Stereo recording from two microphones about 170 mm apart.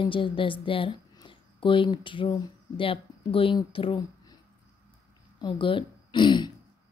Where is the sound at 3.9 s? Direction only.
25° left (ahead or behind).